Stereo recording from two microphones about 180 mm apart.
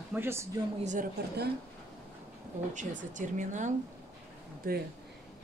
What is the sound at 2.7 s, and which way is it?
Speech, 45° right (ahead or behind).